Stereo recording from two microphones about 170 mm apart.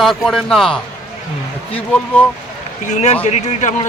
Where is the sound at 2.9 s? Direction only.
40° left (ahead or behind).